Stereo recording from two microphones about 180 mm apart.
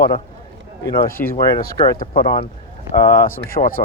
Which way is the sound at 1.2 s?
10° left (ahead or behind).